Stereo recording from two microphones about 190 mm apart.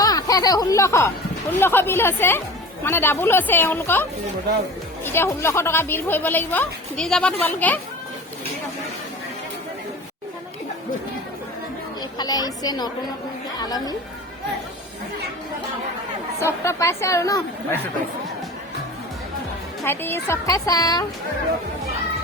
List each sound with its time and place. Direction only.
0.0 s a woman's voice: 20° left (ahead or behind)
5.0 s a woman's voice: 10° left (ahead or behind)
12.1 s a woman's voice: 20° left (ahead or behind)
16.4 s a woman's voice: 15° left (ahead or behind)
19.8 s a woman's voice: 10° left (ahead or behind)